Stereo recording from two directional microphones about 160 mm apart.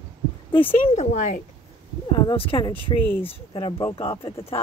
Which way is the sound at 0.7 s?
40° left (ahead or behind).